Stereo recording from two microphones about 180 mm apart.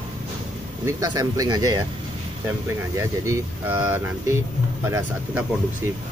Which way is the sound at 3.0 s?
15° right (ahead or behind).